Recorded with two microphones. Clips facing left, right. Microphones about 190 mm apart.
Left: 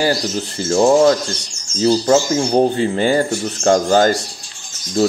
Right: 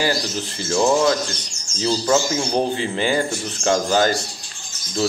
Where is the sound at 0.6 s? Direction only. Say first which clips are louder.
Left 6 dB; 40° left (ahead or behind).